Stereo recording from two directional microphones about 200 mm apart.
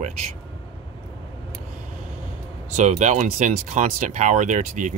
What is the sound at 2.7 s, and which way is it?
A man's voice, 35° right (ahead or behind).